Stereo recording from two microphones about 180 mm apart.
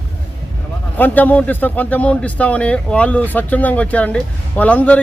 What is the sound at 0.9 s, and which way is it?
A man's voice, 10° left (ahead or behind).